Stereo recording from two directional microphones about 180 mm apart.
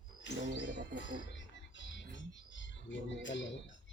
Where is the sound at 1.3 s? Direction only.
90° left.